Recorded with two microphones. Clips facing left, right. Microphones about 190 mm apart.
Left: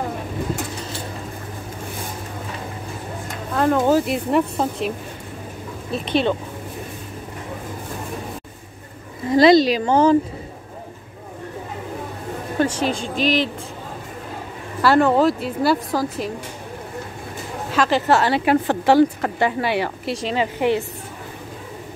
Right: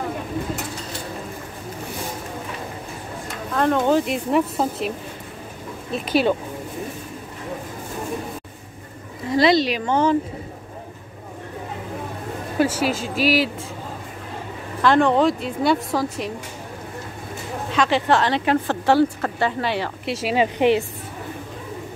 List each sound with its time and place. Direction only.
3.5 s speech: 5° left (ahead or behind)
9.4 s speech: 40° left (ahead or behind)
12.5 s a woman's voice: 5° right (ahead or behind)
14.8 s speech: 5° left (ahead or behind)
17.6 s a woman's voice: centre (ahead or behind)
20.1 s speech: 5° right (ahead or behind)
20.3 s a woman's voice: 15° right (ahead or behind)